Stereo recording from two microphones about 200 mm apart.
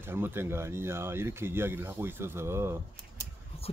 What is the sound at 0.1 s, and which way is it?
Speech, 10° right (ahead or behind).